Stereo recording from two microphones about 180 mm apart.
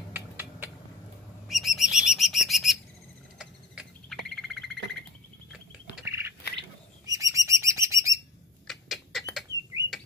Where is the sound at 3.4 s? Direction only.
Centre (ahead or behind).